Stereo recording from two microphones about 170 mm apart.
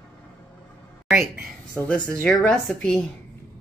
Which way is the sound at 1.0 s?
Centre (ahead or behind).